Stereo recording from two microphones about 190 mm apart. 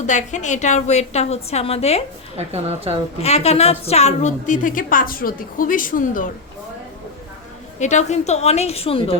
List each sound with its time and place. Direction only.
0.0 s a woman's voice: 40° left (ahead or behind)
2.3 s a woman's voice: 35° right (ahead or behind)
3.2 s a woman's voice: 35° left (ahead or behind)
7.8 s a woman's voice: 40° left (ahead or behind)